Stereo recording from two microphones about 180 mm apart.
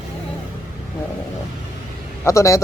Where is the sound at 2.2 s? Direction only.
15° left (ahead or behind).